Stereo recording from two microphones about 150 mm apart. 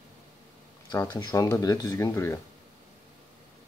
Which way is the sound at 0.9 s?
25° left (ahead or behind).